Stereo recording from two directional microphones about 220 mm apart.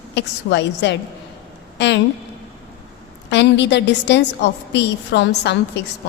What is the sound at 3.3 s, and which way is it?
A woman's voice, 50° left (ahead or behind).